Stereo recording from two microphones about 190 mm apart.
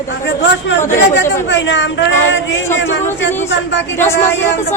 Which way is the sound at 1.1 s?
70° left (ahead or behind).